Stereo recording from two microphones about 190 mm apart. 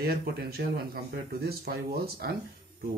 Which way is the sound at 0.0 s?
55° right (ahead or behind).